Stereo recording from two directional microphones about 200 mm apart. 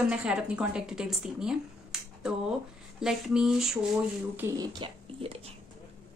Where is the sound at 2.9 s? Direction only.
Centre (ahead or behind).